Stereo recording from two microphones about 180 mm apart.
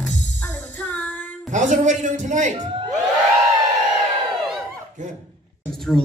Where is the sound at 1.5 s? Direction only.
45° right (ahead or behind).